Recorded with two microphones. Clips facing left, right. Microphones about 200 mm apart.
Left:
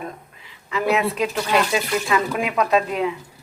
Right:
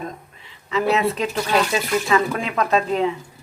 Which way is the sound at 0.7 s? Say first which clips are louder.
Right 1 dB; 5° left (ahead or behind).